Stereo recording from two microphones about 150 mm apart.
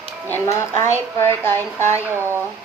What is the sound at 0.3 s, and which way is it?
Speech, 15° left (ahead or behind).